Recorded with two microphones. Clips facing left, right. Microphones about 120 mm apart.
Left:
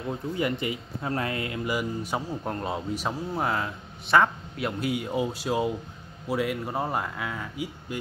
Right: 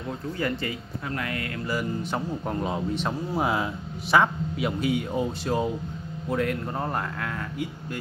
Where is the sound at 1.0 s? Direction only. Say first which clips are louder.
Left 3 dB; 30° left (ahead or behind); by 3.2 s 5° left (ahead or behind).